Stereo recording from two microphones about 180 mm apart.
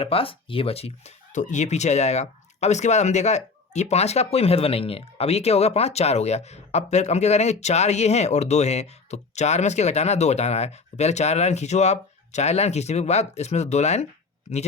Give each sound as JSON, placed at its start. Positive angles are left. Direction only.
{"t": 0.0, "sound": "speech", "side_deg": 30}